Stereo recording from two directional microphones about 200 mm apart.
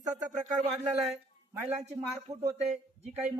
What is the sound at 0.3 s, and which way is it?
Speech, 35° right (ahead or behind).